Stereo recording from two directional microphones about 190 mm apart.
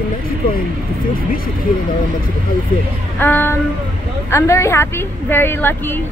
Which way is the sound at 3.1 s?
10° left (ahead or behind).